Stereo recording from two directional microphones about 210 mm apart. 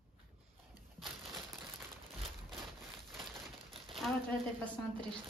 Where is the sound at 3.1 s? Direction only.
Centre (ahead or behind).